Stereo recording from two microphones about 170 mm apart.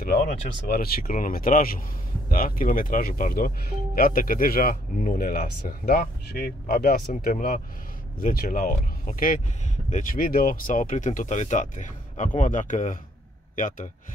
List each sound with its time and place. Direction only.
0.0 s speech: 60° left (ahead or behind)
7.2 s speech: 45° left (ahead or behind)